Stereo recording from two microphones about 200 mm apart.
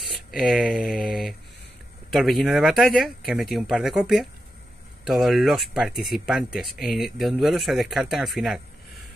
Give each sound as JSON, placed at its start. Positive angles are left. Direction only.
{"t": 0.0, "sound": "speech", "side_deg": 0}